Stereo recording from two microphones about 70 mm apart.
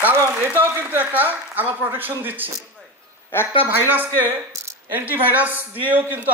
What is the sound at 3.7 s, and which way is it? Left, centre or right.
A man's voice, right.